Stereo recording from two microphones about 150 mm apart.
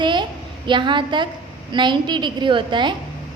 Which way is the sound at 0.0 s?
30° right (ahead or behind).